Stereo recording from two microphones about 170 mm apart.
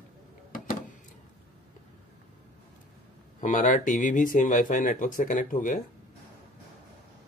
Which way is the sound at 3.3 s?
45° left (ahead or behind).